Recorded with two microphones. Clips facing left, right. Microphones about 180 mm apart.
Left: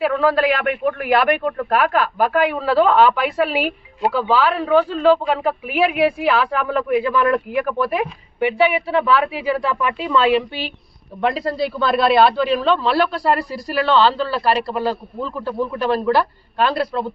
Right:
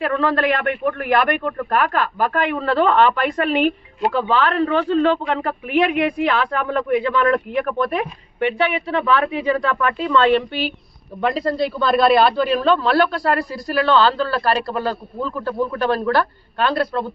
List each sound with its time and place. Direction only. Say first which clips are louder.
0.0 s a man's voice: left 2 dB; 5° left (ahead or behind)